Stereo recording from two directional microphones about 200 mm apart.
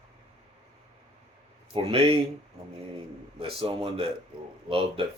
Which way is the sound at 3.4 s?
25° right (ahead or behind).